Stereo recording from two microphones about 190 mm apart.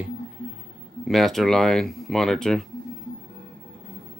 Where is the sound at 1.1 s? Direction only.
Centre (ahead or behind).